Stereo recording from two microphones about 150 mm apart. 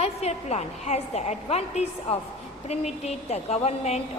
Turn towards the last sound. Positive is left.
turn(degrees=45)  # may be behind; listen again after turning